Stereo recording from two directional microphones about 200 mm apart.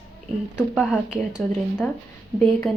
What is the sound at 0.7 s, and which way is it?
A woman's voice, centre (ahead or behind).